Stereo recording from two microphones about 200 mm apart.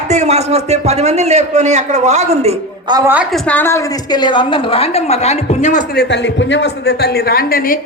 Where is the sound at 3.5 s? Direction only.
10° left (ahead or behind); by 5.9 s 35° left (ahead or behind).